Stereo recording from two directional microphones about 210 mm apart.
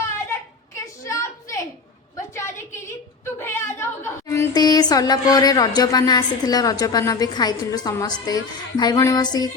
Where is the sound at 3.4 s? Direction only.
10° left (ahead or behind).